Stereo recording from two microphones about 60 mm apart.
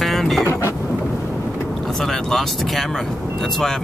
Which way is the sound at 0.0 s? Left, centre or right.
Centre.